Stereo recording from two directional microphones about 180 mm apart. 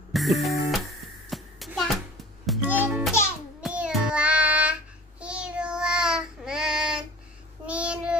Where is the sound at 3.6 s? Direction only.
5° right (ahead or behind).